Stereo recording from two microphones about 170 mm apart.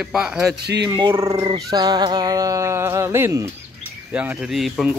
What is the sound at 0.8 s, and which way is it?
Speech, 20° right (ahead or behind).